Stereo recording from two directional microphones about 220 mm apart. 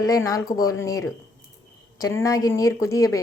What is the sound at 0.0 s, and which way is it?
Speech, 15° left (ahead or behind).